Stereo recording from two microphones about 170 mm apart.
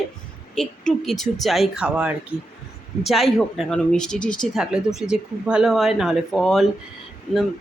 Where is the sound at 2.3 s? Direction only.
30° left (ahead or behind).